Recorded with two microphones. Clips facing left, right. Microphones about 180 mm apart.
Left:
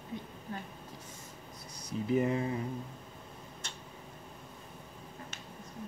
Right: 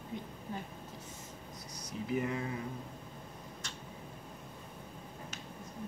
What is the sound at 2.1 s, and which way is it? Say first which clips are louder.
Speech: left 5 dB; 30° left (ahead or behind).